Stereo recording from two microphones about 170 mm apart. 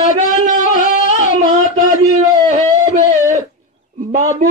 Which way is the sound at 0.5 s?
50° right (ahead or behind).